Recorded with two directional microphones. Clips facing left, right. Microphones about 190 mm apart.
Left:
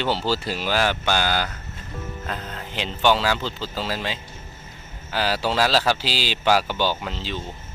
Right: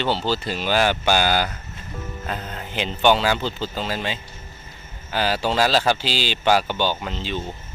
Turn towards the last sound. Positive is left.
turn(degrees=0)  # may be behind; listen again after turning